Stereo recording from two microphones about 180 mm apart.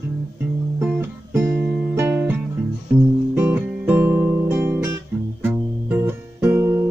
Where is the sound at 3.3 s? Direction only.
10° right (ahead or behind).